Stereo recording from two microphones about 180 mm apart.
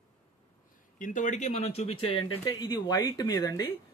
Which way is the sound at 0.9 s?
45° left (ahead or behind).